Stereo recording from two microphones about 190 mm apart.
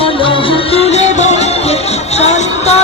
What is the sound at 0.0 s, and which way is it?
Music, 30° left (ahead or behind).